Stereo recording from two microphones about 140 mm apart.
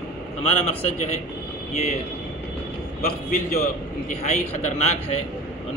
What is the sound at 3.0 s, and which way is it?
Speech, 90° left.